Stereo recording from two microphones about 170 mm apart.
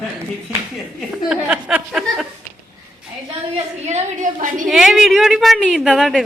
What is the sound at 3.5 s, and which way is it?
A woman's voice, 40° right (ahead or behind).